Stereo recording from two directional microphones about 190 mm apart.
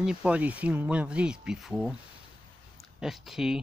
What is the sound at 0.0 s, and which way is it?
Speech, 5° right (ahead or behind).